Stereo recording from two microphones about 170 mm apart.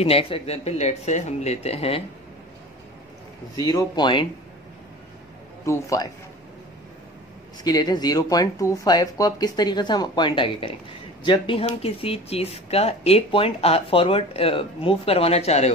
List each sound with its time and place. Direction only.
0.0 s speech: 35° left (ahead or behind)
3.5 s speech: 20° left (ahead or behind)
5.7 s a man's voice: 20° left (ahead or behind)
7.6 s speech: 25° left (ahead or behind); by 15.7 s 40° left (ahead or behind)